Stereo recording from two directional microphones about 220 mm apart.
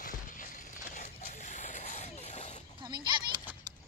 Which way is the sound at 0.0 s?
35° left (ahead or behind).